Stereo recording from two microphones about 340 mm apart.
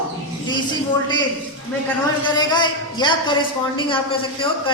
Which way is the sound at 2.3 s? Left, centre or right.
Centre.